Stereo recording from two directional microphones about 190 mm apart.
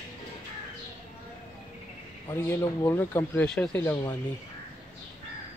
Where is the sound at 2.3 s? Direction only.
15° left (ahead or behind).